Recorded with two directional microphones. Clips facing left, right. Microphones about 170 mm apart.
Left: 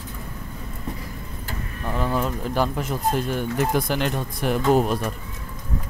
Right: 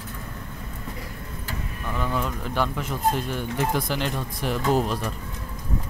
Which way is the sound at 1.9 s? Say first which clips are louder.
Left 3 dB; 35° left (ahead or behind).